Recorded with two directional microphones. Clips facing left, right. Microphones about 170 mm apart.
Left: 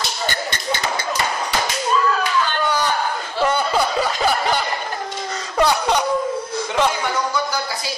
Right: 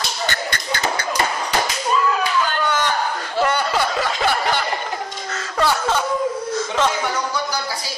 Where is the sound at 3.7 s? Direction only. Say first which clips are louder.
Left 1 dB; centre (ahead or behind).